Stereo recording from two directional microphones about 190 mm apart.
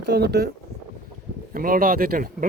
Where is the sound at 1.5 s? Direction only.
50° right (ahead or behind).